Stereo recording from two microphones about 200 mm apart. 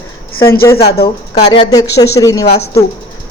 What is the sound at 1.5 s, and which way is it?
Speech, 20° left (ahead or behind).